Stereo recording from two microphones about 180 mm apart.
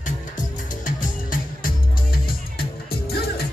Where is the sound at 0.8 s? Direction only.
50° left (ahead or behind).